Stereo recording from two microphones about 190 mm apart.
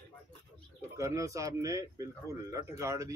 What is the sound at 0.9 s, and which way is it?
Speech, 15° right (ahead or behind).